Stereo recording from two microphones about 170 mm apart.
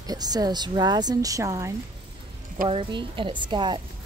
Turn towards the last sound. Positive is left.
turn(degrees=-25)  # may be behind; listen again after turning